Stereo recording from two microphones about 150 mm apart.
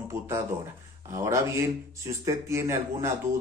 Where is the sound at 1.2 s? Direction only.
20° right (ahead or behind).